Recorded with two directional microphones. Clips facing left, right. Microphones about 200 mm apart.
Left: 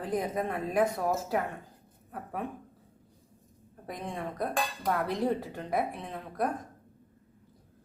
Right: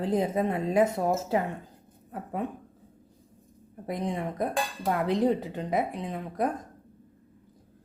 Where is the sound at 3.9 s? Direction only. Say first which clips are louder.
Right 6 dB; 20° right (ahead or behind).